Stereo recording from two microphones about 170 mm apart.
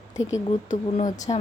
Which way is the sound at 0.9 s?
45° left (ahead or behind).